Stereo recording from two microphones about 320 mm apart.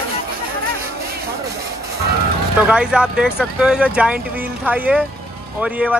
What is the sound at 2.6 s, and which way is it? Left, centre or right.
Speech, centre.